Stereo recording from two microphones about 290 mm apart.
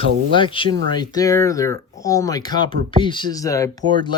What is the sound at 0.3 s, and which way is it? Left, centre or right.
Speech, centre.